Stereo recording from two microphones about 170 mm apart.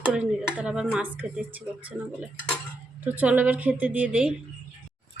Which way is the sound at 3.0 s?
10° right (ahead or behind).